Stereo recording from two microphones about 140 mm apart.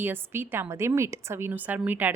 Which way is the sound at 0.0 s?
15° right (ahead or behind).